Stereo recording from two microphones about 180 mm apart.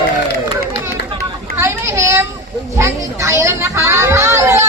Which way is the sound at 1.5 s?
15° right (ahead or behind).